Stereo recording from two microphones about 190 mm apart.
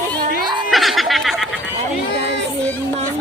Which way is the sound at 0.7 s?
Centre (ahead or behind).